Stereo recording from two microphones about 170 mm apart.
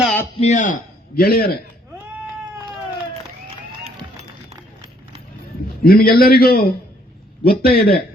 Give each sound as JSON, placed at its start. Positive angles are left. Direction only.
{"t": 0.3, "sound": "a man's voice", "side_deg": 45}
{"t": 2.1, "sound": "a sound", "side_deg": -10}
{"t": 5.8, "sound": "a man's voice", "side_deg": 60}